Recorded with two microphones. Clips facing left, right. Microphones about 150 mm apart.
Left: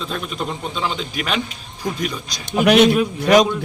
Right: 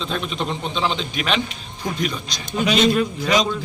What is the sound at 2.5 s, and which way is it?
Speech, 60° left (ahead or behind).